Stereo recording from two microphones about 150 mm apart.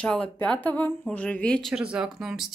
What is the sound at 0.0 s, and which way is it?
Speech, 10° left (ahead or behind).